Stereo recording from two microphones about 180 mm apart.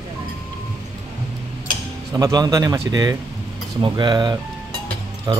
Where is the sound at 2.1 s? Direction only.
20° right (ahead or behind).